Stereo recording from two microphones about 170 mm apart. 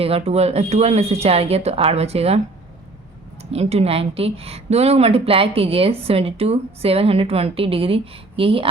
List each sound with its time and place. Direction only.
0.0 s a woman's voice: 35° right (ahead or behind)
3.5 s a woman's voice: 40° right (ahead or behind)